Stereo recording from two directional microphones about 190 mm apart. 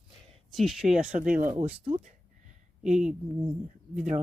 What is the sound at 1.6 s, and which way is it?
Speech, 35° right (ahead or behind).